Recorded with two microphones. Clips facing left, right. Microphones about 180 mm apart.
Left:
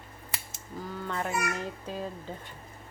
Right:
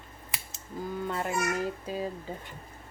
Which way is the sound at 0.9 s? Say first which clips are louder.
Right 1 dB; 10° right (ahead or behind).